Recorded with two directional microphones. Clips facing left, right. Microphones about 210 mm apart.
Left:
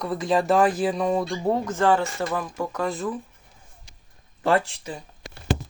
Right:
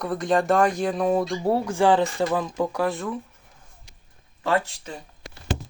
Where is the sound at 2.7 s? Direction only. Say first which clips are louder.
Right 2 dB; 5° right (ahead or behind).